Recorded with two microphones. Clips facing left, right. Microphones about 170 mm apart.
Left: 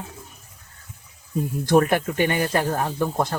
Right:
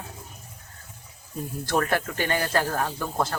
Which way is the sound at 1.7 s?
20° left (ahead or behind).